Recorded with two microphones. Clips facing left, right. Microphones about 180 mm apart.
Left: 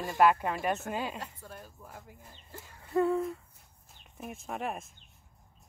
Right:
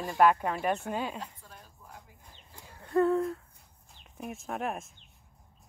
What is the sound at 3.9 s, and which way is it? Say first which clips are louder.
Speech: right 3 dB; centre (ahead or behind).